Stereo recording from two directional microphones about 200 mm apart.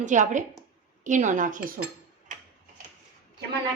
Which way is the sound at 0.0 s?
40° right (ahead or behind).